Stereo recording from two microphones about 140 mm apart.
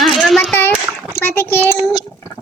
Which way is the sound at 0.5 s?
15° left (ahead or behind).